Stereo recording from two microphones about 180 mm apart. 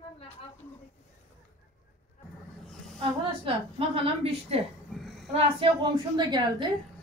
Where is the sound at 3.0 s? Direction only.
30° right (ahead or behind).